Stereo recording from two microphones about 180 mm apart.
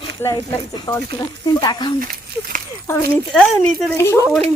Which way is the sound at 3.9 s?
15° left (ahead or behind).